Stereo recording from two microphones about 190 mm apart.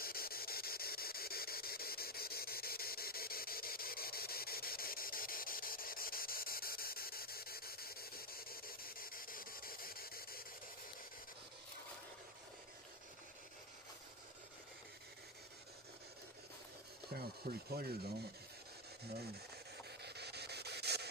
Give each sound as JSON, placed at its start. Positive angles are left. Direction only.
{"t": 0.0, "sound": "a sound", "side_deg": 50}
{"t": 17.1, "sound": "speech", "side_deg": -55}
{"t": 20.0, "sound": "hiss", "side_deg": -60}